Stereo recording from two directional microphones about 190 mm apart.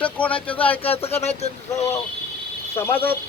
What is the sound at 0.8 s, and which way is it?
Speech, 30° left (ahead or behind).